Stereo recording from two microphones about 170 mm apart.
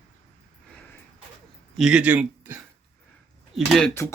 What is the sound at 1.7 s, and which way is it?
Speech, 5° right (ahead or behind).